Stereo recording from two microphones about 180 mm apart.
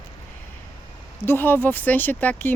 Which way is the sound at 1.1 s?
15° left (ahead or behind).